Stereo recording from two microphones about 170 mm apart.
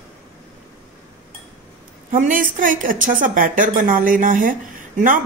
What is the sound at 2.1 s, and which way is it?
A woman's voice, 50° right (ahead or behind).